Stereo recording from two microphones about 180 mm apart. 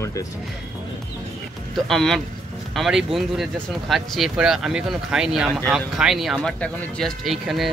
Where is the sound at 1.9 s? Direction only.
Centre (ahead or behind).